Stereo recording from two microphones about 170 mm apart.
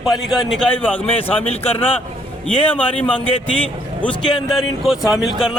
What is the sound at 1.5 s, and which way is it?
Speech, 35° left (ahead or behind).